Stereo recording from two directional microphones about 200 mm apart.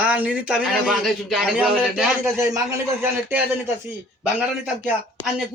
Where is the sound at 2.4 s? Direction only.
15° right (ahead or behind).